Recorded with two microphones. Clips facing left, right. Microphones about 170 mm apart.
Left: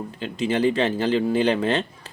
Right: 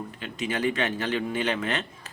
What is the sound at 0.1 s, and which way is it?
Speech, 30° left (ahead or behind).